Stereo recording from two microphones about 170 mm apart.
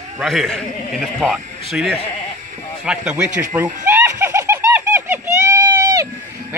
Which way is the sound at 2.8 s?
10° right (ahead or behind).